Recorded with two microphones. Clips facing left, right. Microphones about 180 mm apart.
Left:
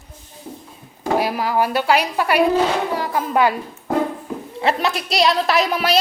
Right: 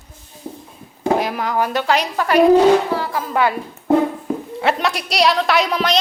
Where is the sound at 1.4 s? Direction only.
10° left (ahead or behind).